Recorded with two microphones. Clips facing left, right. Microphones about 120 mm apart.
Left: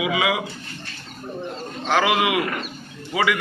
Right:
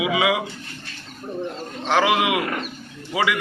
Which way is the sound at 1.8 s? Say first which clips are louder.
Right 1 dB; 20° right (ahead or behind).